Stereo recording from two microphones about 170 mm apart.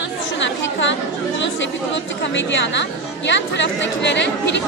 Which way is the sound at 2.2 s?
90° left.